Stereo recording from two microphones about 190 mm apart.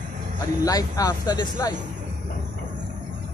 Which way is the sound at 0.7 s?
20° left (ahead or behind).